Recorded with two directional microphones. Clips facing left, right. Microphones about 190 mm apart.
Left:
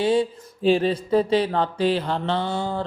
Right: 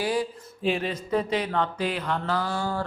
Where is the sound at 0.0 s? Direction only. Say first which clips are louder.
Left 6 dB; 25° left (ahead or behind).